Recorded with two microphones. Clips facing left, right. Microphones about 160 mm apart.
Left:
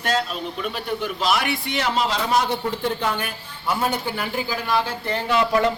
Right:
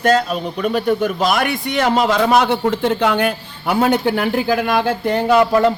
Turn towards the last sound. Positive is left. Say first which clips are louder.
# right 7 dB
turn(degrees=-45)  # may be behind; listen again after turning